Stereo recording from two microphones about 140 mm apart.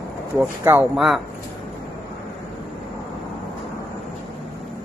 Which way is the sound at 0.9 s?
Centre (ahead or behind).